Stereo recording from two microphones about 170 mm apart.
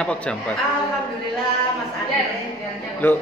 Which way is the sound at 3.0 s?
10° left (ahead or behind).